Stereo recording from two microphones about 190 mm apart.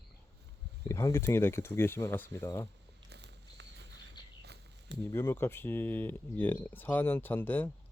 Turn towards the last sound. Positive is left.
turn(degrees=10)  # may be behind; listen again after turning